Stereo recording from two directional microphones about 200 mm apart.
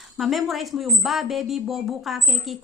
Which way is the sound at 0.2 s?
Centre (ahead or behind).